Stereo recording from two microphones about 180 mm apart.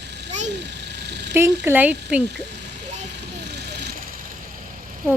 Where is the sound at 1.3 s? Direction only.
15° right (ahead or behind).